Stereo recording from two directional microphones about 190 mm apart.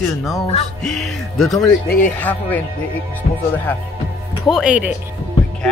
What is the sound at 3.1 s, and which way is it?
Speech, 10° left (ahead or behind).